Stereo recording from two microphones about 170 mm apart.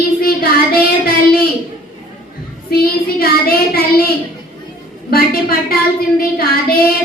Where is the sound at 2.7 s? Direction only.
65° left (ahead or behind).